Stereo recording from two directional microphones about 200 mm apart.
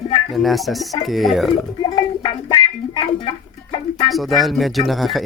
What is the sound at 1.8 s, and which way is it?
Music, 25° left (ahead or behind).